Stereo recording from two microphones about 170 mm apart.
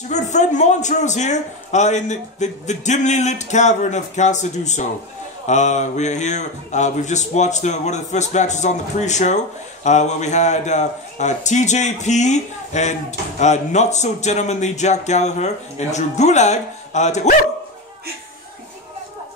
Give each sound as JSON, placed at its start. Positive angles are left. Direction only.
{"t": 0.1, "sound": "a man's voice", "side_deg": 45}